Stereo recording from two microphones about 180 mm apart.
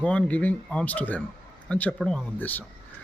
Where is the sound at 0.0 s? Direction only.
5° left (ahead or behind).